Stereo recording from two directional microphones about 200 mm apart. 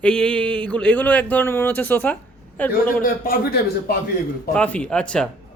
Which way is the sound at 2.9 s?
45° left (ahead or behind).